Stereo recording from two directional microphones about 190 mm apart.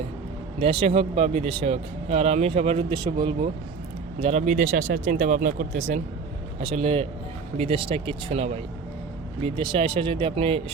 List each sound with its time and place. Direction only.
0.6 s speech: 30° right (ahead or behind)
4.2 s speech: 35° right (ahead or behind)